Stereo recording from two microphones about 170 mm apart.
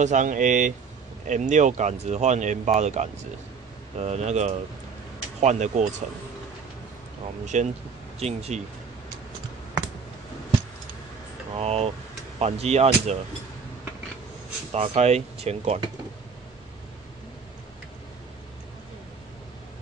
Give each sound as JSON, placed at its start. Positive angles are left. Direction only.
{"t": 0.0, "sound": "speech", "side_deg": -45}
{"t": 7.5, "sound": "speech", "side_deg": -45}
{"t": 11.5, "sound": "speech", "side_deg": -35}
{"t": 14.7, "sound": "speech", "side_deg": -40}